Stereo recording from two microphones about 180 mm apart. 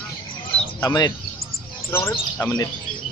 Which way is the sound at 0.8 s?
20° left (ahead or behind).